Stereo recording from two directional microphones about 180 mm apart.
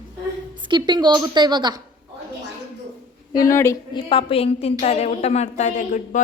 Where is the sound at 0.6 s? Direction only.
25° right (ahead or behind).